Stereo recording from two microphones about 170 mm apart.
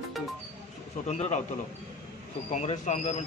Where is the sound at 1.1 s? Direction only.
40° left (ahead or behind).